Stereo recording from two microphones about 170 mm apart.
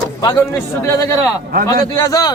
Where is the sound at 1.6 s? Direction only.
20° left (ahead or behind).